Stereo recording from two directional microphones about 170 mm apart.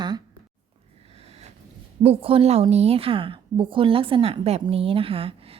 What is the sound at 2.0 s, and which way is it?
A woman's voice, 35° right (ahead or behind).